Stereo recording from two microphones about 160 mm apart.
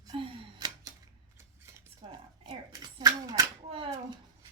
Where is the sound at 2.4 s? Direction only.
30° right (ahead or behind).